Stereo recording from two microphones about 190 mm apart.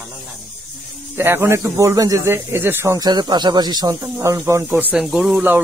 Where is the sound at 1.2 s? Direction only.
15° right (ahead or behind).